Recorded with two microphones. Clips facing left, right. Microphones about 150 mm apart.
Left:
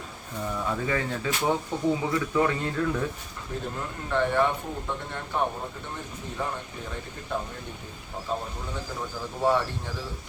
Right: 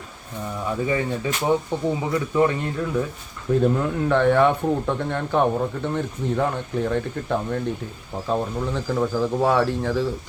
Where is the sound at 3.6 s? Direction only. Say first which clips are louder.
Right 14 dB; 65° right (ahead or behind).